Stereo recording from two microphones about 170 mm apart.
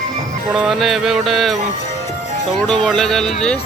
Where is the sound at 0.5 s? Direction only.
Centre (ahead or behind).